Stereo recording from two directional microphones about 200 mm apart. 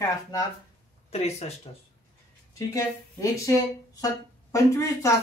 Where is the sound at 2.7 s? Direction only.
15° left (ahead or behind).